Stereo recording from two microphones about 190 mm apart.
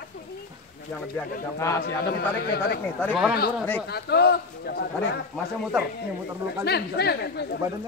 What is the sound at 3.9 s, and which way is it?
Speech, 60° left (ahead or behind).